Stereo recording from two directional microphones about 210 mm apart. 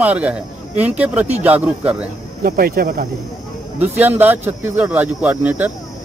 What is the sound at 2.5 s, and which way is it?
Speech, 45° right (ahead or behind).